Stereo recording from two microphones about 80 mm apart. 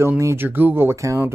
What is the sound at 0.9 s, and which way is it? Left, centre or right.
Speech, right.